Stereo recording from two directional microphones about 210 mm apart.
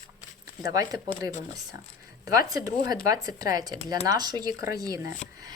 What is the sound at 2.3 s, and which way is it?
Speech, 15° right (ahead or behind).